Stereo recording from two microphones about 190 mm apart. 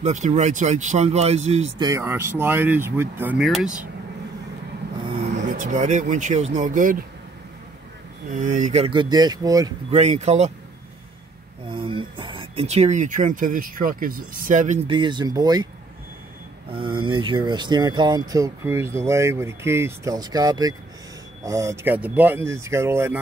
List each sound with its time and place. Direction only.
0.0 s speech: 35° right (ahead or behind)
1.8 s speech: 20° right (ahead or behind)
3.3 s speech: centre (ahead or behind)
5.2 s speech: 40° right (ahead or behind)
8.3 s speech: 40° right (ahead or behind)
8.9 s speech: 20° right (ahead or behind)
9.8 s speech: 35° right (ahead or behind)
11.7 s speech: 25° right (ahead or behind)
14.9 s speech: 25° right (ahead or behind)
16.7 s speech: 25° right (ahead or behind)